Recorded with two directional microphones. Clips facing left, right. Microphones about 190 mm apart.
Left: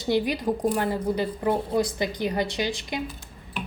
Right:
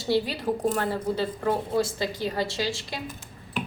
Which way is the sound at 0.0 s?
15° left (ahead or behind).